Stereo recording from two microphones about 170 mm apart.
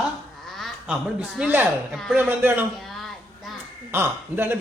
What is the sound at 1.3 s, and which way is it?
Speech, 10° right (ahead or behind).